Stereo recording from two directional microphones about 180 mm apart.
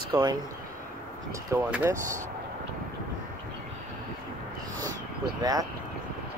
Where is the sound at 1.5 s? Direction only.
15° right (ahead or behind).